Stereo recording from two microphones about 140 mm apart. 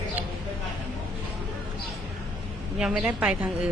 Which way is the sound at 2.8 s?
5° right (ahead or behind).